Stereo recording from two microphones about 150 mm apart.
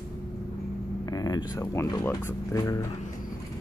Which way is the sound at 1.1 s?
25° left (ahead or behind).